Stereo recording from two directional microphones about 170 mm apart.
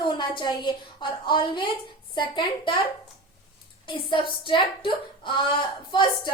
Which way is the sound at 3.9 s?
30° left (ahead or behind).